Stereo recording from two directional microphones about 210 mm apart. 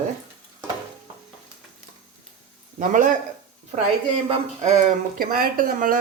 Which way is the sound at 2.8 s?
40° right (ahead or behind).